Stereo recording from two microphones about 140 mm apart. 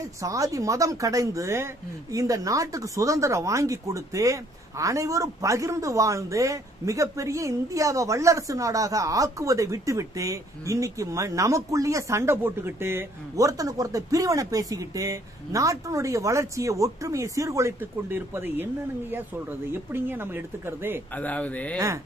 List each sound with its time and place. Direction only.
0.0 s a woman's voice: 25° right (ahead or behind)
21.1 s speech: 10° left (ahead or behind)
21.7 s a woman's voice: 20° right (ahead or behind)